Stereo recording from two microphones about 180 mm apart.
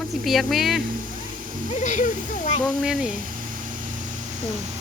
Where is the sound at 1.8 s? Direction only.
40° left (ahead or behind).